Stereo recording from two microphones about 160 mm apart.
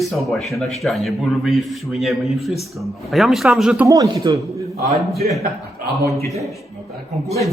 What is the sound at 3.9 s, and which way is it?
Speech, 20° right (ahead or behind).